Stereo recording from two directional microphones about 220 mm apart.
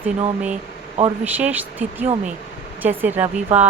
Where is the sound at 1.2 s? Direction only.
5° right (ahead or behind).